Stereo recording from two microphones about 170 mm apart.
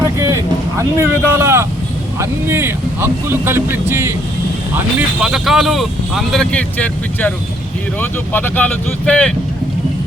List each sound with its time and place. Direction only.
0.0 s vehicle: 20° right (ahead or behind)
2.1 s speech: 15° right (ahead or behind)
4.9 s speech: 5° right (ahead or behind)